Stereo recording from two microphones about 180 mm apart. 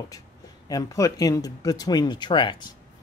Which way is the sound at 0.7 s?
20° left (ahead or behind).